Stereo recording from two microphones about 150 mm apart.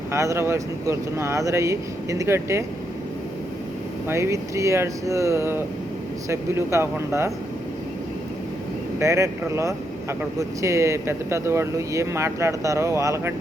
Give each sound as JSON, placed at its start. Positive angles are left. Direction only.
{"t": 0.1, "sound": "speech", "side_deg": -20}
{"t": 4.1, "sound": "speech", "side_deg": -20}
{"t": 9.0, "sound": "speech", "side_deg": -20}